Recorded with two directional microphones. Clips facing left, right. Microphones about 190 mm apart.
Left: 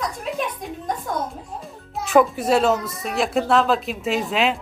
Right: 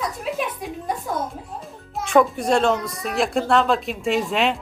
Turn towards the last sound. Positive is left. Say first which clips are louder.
# right 1 dB
turn(degrees=0)  # may be behind; listen again after turning